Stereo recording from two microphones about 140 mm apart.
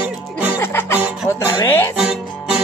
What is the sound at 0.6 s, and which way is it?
Music, 15° left (ahead or behind).